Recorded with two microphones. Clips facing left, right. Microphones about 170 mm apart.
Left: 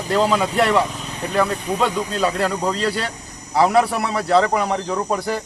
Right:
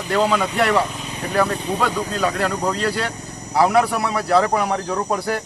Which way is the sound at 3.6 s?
Centre (ahead or behind).